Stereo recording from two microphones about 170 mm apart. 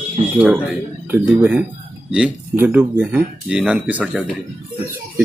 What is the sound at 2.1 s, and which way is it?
Speech, 10° right (ahead or behind).